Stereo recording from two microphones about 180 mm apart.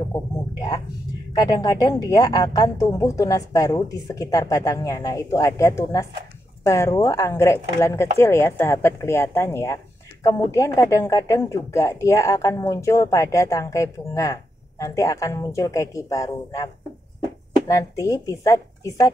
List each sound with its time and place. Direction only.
0.1 s a woman's voice: 20° left (ahead or behind)